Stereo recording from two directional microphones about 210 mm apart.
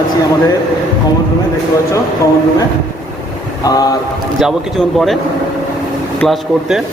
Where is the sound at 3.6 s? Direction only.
15° left (ahead or behind).